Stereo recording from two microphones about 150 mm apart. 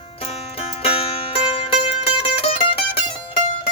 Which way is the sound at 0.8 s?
40° left (ahead or behind).